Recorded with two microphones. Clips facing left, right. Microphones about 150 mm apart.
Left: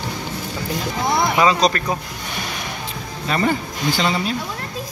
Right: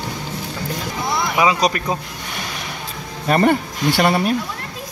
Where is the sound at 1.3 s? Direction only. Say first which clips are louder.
Right 1 dB; 10° right (ahead or behind).